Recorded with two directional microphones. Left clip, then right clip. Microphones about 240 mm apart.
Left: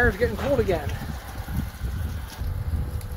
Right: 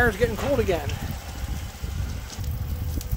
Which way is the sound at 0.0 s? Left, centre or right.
Centre.